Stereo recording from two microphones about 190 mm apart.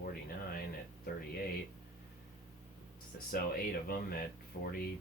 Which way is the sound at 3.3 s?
55° left (ahead or behind).